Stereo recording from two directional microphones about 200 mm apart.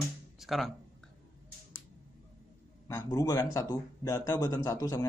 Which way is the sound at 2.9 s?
20° left (ahead or behind).